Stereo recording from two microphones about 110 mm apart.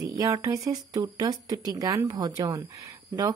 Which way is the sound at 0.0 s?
30° right (ahead or behind).